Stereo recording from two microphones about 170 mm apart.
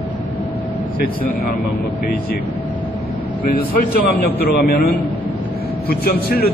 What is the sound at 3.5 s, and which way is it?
A man's voice, 60° left (ahead or behind).